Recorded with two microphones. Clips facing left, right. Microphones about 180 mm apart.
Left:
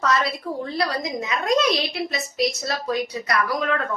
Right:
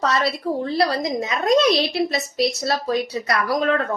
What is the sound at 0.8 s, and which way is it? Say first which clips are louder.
A woman's voice: right 3 dB; 35° right (ahead or behind).